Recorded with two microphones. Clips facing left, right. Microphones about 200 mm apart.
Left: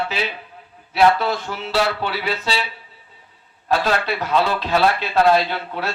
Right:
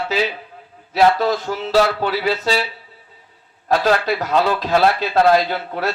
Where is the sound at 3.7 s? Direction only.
40° right (ahead or behind).